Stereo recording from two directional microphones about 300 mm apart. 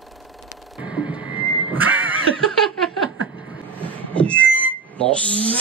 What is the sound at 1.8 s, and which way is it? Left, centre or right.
Snicker, centre.